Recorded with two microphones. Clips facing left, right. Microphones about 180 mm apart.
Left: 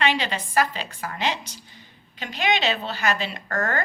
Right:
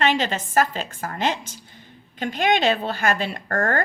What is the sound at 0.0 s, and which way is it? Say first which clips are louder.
A woman's voice: right 3 dB; 45° right (ahead or behind).